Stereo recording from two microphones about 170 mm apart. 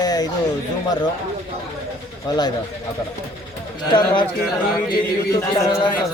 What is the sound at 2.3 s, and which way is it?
Speech, 25° left (ahead or behind).